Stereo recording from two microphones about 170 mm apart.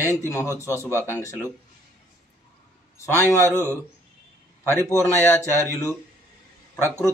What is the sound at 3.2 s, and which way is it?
Speech, 15° left (ahead or behind).